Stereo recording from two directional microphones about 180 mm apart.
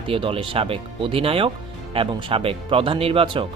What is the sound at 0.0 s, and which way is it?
Speech, 30° right (ahead or behind).